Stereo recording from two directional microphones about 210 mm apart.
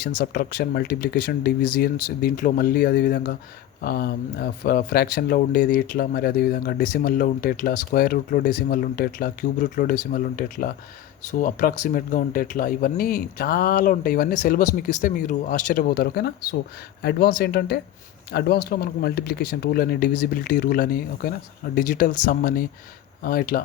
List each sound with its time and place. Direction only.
0.2 s speech: 45° left (ahead or behind)